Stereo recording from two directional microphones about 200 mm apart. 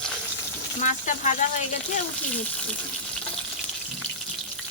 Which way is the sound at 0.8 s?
40° left (ahead or behind).